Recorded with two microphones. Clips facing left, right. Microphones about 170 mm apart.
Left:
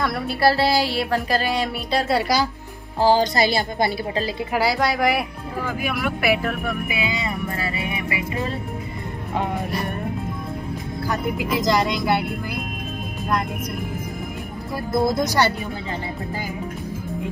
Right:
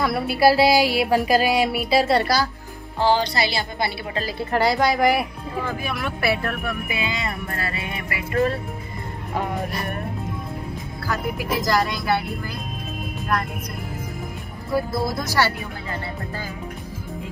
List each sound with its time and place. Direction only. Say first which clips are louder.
0.0 s music: right 2 dB; 5° right (ahead or behind)
3.0 s a woman's voice: left 3 dB; 40° left (ahead or behind)
4.5 s speech: right 3 dB; 5° left (ahead or behind)
5.7 s speech: left 6 dB; 10° left (ahead or behind)
11.1 s speech: left 1 dB; 20° left (ahead or behind)
14.9 s speech: left 5 dB; 20° left (ahead or behind)